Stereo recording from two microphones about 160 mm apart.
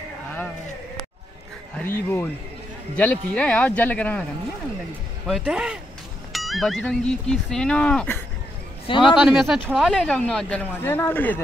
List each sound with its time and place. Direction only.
1.8 s speech: 10° left (ahead or behind)
5.2 s speech: 5° right (ahead or behind)
8.8 s a man's voice: 30° left (ahead or behind)
9.2 s speech: centre (ahead or behind)